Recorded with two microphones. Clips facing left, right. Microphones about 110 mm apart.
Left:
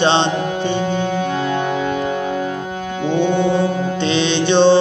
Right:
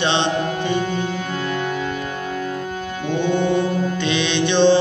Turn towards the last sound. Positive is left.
turn(degrees=30)  # may be behind; listen again after turning